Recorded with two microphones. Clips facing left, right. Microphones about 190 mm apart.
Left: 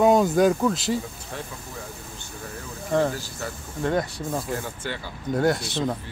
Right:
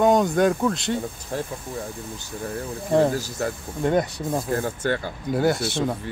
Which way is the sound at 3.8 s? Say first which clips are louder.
Right 3 dB; 20° right (ahead or behind).